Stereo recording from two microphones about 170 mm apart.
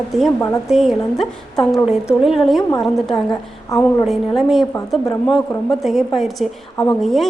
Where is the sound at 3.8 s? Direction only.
Centre (ahead or behind).